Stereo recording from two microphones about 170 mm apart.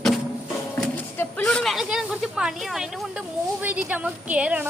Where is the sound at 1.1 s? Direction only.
5° left (ahead or behind).